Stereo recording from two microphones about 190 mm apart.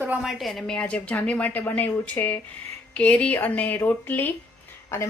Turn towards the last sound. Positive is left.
turn(degrees=15)  # may be behind; listen again after turning